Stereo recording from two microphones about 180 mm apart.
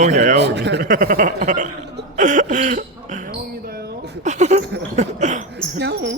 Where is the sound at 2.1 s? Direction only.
45° right (ahead or behind); by 4.1 s 60° right (ahead or behind).